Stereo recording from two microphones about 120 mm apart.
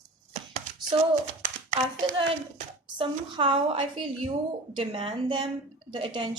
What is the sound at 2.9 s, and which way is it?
A woman's voice, 45° right (ahead or behind).